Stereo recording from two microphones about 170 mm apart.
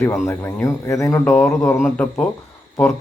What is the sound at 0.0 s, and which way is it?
Speech, 15° left (ahead or behind).